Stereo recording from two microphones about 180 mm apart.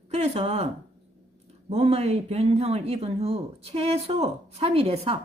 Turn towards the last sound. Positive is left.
turn(degrees=-35)  # may be behind; listen again after turning